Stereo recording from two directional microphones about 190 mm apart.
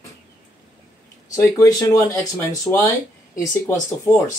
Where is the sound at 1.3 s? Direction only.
15° left (ahead or behind).